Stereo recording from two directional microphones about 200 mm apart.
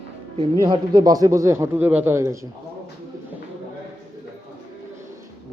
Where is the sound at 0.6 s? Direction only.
20° right (ahead or behind).